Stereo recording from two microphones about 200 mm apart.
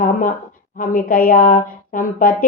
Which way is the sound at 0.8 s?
45° left (ahead or behind).